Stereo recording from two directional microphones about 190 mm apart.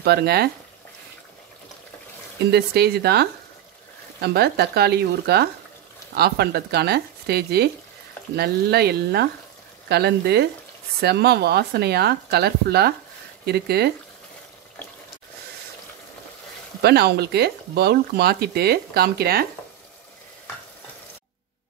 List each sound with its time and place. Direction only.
0.0 s speech: 55° right (ahead or behind)
2.5 s speech: 55° right (ahead or behind)
16.8 s speech: 60° right (ahead or behind)